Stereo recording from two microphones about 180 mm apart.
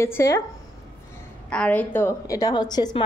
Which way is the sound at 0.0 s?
15° left (ahead or behind).